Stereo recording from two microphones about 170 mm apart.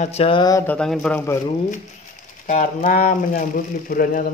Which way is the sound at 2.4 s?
45° left (ahead or behind).